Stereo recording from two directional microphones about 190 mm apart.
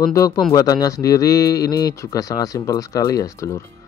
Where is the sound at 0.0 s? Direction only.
15° left (ahead or behind).